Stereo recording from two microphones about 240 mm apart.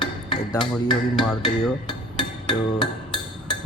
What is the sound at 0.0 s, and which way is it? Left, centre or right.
Dishes, centre.